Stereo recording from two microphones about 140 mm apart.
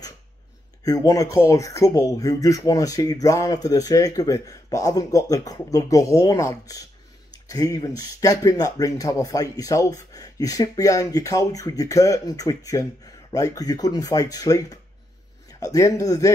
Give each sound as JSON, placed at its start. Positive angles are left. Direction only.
{"t": 0.8, "sound": "speech", "side_deg": 25}